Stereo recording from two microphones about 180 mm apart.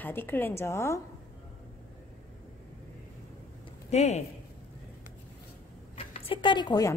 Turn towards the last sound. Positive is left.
turn(degrees=20)  # may be behind; listen again after turning